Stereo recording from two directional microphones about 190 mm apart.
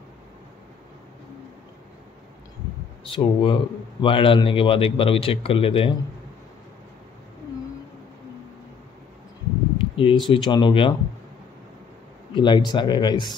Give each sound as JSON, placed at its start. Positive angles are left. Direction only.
{"t": 3.1, "sound": "speech", "side_deg": 25}
{"t": 9.8, "sound": "a sound", "side_deg": 25}
{"t": 10.2, "sound": "speech", "side_deg": 25}
{"t": 12.4, "sound": "speech", "side_deg": 25}